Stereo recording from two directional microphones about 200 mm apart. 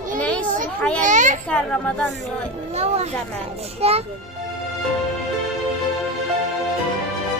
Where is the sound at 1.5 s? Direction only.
5° left (ahead or behind).